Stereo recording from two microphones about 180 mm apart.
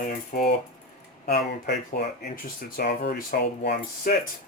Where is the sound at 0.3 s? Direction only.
50° left (ahead or behind).